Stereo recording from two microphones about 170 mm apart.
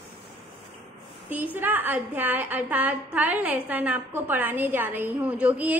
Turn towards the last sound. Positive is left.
turn(degrees=-10)  # may be behind; listen again after turning